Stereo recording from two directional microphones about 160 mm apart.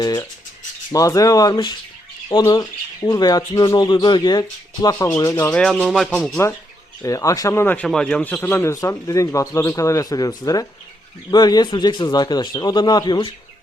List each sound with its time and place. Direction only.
0.0 s speech: 25° left (ahead or behind)
5.5 s speech: 5° left (ahead or behind)
7.0 s speech: 20° left (ahead or behind)